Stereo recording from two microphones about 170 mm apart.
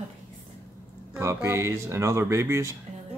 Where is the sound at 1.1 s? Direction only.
15° right (ahead or behind).